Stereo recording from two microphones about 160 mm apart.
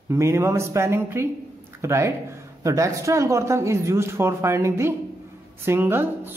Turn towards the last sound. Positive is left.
turn(degrees=-15)  # may be behind; listen again after turning